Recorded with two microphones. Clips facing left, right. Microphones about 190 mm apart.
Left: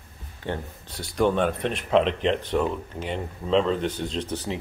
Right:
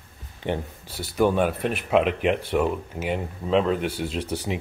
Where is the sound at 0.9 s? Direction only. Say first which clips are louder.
Right 1 dB; 5° right (ahead or behind).